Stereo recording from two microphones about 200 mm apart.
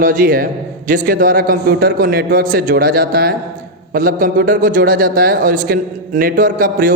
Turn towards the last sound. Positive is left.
turn(degrees=-45)  # may be behind; listen again after turning